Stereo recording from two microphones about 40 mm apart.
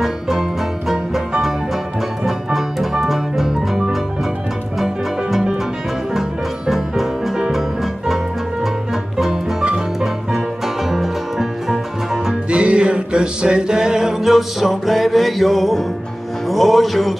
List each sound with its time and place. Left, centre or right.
0.0 s music: centre
2.2 s music: centre
6.7 s music: centre
9.2 s music: centre
12.4 s music: right; by 17.1 s centre